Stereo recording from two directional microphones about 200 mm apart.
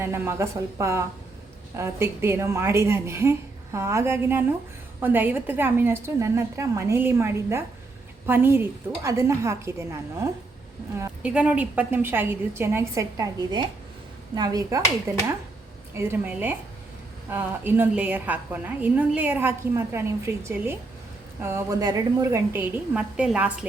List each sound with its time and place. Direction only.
0.0 s a woman's voice: 10° right (ahead or behind)